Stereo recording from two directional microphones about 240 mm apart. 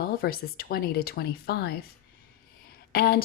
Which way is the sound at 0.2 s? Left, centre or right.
Left.